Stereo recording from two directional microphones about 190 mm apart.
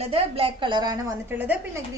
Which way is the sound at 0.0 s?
30° right (ahead or behind).